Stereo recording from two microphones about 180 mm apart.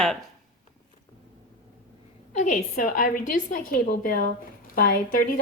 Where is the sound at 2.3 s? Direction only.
45° left (ahead or behind).